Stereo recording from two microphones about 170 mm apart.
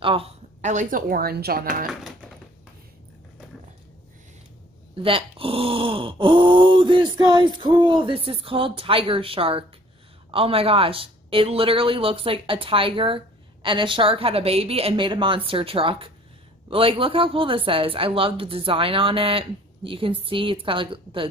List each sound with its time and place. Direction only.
0.0 s speech: 35° right (ahead or behind); by 1.9 s 60° right (ahead or behind)
4.9 s groan: 30° right (ahead or behind)
7.8 s speech: 30° right (ahead or behind)